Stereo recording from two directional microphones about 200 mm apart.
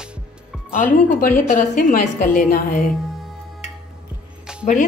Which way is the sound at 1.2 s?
40° left (ahead or behind).